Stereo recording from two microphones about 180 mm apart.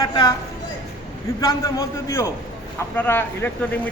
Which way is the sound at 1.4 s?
15° left (ahead or behind).